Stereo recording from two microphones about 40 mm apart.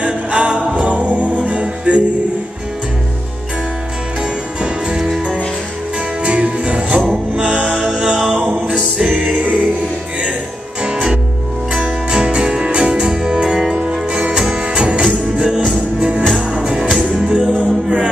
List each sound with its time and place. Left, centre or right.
0.0 s music: right
4.6 s music: right
6.2 s music: right
10.8 s music: right
14.6 s music: right